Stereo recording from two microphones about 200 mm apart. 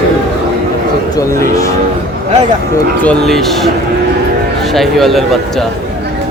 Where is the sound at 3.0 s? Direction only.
5° left (ahead or behind).